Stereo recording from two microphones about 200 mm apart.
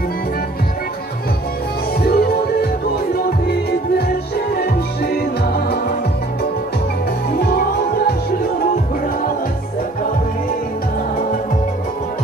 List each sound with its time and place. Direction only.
2.0 s music: 50° left (ahead or behind)
7.3 s music: 50° left (ahead or behind)